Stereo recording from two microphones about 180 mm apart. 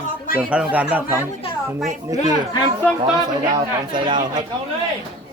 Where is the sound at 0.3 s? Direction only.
5° right (ahead or behind).